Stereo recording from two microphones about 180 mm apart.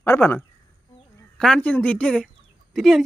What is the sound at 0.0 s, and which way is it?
Speech, 10° left (ahead or behind).